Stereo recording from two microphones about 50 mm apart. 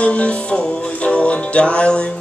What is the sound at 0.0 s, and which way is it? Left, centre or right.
Music, left.